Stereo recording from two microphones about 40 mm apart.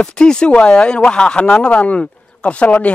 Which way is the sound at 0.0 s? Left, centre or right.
Left.